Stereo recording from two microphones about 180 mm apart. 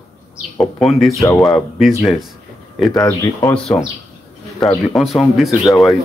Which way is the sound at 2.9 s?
20° left (ahead or behind).